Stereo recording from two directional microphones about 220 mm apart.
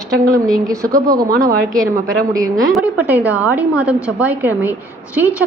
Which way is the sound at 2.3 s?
15° right (ahead or behind).